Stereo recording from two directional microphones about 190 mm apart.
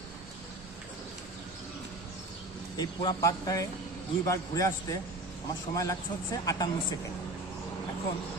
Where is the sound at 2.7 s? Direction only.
20° left (ahead or behind).